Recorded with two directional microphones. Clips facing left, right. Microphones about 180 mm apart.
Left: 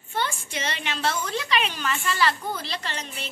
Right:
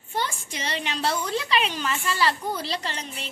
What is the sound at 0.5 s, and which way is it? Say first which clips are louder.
A woman's voice: even; 35° right (ahead or behind).